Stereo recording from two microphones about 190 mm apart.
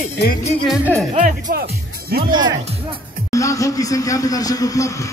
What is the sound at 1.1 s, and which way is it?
Speech, 45° right (ahead or behind).